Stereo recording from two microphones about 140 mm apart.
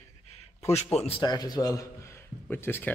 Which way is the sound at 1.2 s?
30° left (ahead or behind).